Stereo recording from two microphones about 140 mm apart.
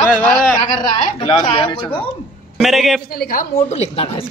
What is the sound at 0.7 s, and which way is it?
A woman's voice, 35° left (ahead or behind).